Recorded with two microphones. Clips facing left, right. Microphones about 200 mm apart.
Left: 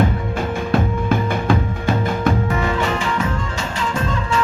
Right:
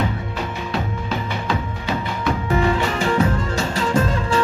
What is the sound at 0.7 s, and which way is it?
Music, 50° left (ahead or behind).